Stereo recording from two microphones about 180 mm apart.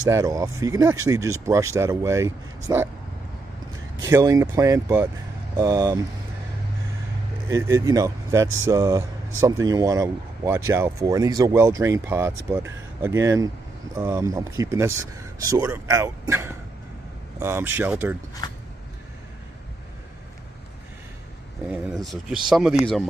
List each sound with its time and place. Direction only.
0.1 s speech: 20° right (ahead or behind)
3.9 s speech: 20° right (ahead or behind)
7.4 s speech: 15° right (ahead or behind)
18.4 s a sound: 20° left (ahead or behind)
21.9 s speech: centre (ahead or behind)